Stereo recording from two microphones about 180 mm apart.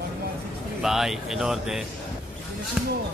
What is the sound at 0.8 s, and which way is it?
Speech, centre (ahead or behind).